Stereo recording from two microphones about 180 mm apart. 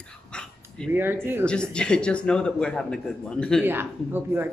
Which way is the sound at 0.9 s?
10° right (ahead or behind).